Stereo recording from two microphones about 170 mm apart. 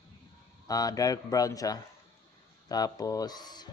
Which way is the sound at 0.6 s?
20° left (ahead or behind).